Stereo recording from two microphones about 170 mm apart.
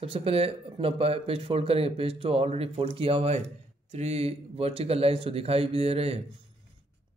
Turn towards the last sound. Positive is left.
turn(degrees=-35)  # may be behind; listen again after turning